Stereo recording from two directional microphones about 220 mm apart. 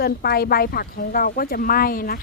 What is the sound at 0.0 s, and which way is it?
Speech, 45° left (ahead or behind).